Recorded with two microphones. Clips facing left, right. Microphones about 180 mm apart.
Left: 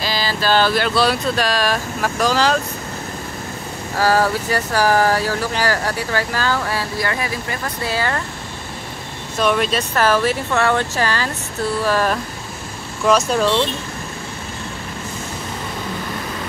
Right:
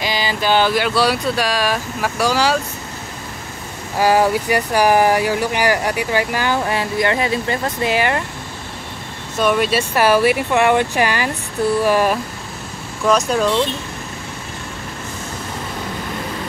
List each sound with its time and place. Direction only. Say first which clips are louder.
0.0 s speech: right 1 dB; 15° right (ahead or behind)
4.0 s speech: right 2 dB; 15° right (ahead or behind)
9.4 s speech: right 2 dB; 5° right (ahead or behind)
13.0 s speech: even; centre (ahead or behind)